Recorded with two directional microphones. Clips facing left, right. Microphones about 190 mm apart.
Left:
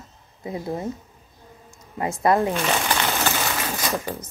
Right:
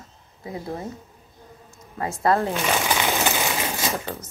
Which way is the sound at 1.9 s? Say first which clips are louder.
Left 2 dB; 20° left (ahead or behind).